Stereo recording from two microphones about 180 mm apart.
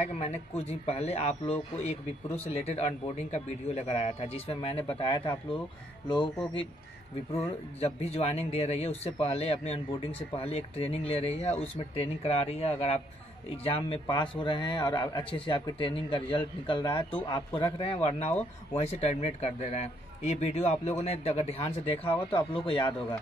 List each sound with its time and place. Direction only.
0.0 s speech: 35° left (ahead or behind)
7.8 s speech: 35° left (ahead or behind)